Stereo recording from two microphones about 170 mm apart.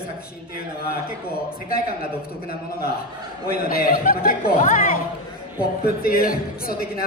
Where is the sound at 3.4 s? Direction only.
60° left (ahead or behind).